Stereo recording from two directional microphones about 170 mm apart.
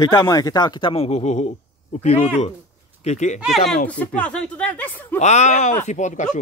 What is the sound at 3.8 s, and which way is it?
Speech, 10° left (ahead or behind).